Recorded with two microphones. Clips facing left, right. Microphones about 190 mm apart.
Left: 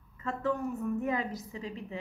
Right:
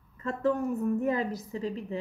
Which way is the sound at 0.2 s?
40° right (ahead or behind).